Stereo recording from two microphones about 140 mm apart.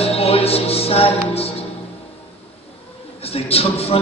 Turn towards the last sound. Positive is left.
turn(degrees=45)  # may be behind; listen again after turning